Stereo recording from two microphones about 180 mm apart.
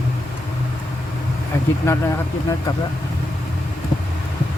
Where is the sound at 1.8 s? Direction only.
15° left (ahead or behind).